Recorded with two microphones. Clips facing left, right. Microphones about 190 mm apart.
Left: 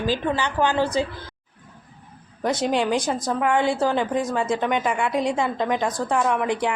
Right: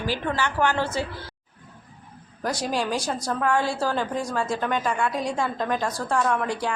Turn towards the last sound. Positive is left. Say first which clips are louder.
# left 3 dB
turn(degrees=20)  # may be behind; listen again after turning